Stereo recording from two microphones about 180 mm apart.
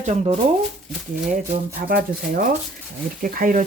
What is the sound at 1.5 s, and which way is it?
Speech, 50° right (ahead or behind).